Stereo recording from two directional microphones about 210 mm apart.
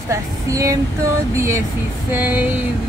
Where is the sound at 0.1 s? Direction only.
15° right (ahead or behind).